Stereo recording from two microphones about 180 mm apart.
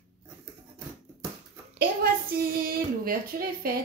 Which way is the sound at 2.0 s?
55° right (ahead or behind).